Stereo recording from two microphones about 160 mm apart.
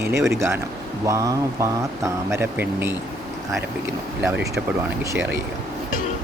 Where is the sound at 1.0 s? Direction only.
20° right (ahead or behind).